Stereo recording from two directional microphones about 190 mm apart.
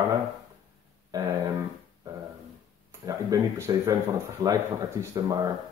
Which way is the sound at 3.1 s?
20° right (ahead or behind).